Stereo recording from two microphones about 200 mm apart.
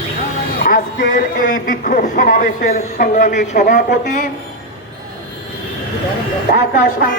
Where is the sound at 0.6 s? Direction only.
40° left (ahead or behind).